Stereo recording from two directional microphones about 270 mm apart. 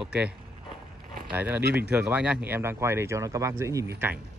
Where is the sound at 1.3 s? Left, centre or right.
Centre.